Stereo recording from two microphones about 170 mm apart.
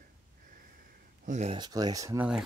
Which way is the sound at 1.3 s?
40° right (ahead or behind).